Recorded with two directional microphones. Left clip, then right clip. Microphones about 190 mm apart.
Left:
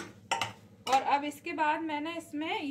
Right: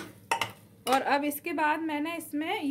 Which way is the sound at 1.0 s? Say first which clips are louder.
Right 2 dB; 55° right (ahead or behind).